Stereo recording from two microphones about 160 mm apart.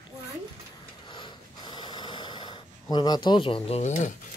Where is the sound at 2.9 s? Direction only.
25° left (ahead or behind); by 4.1 s 50° left (ahead or behind).